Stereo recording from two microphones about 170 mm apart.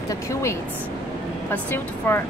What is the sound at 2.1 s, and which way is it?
Speech, 10° left (ahead or behind).